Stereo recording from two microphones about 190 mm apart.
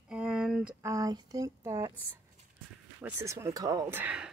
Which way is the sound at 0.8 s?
20° right (ahead or behind).